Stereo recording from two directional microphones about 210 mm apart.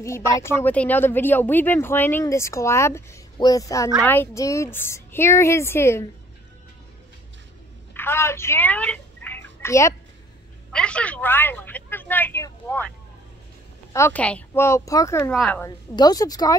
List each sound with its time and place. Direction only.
0.0 s speech: 15° left (ahead or behind)
7.9 s a sound: 10° left (ahead or behind)
10.7 s speech: 5° left (ahead or behind)
13.9 s speech: 10° left (ahead or behind)
15.3 s a woman's voice: centre (ahead or behind)
15.6 s speech: 15° left (ahead or behind)